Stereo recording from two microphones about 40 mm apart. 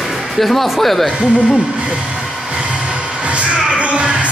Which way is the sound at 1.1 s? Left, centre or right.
Right.